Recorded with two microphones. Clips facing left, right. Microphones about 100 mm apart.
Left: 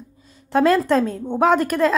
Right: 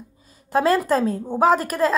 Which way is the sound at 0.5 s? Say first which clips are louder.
Left 2 dB; 5° right (ahead or behind).